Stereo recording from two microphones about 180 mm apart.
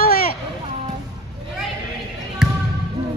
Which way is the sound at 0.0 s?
55° left (ahead or behind).